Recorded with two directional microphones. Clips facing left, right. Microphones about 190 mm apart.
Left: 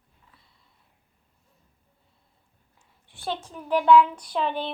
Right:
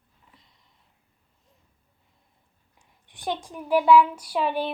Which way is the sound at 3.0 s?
15° right (ahead or behind).